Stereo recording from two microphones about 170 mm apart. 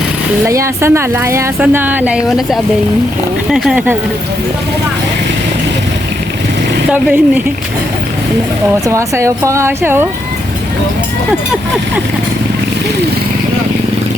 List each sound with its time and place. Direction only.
0.4 s speech: 15° right (ahead or behind)
6.9 s speech: 10° right (ahead or behind)
8.9 s speech: 15° right (ahead or behind)